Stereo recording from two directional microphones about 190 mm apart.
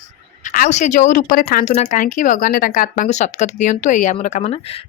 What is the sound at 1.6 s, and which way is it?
Speech, 35° left (ahead or behind).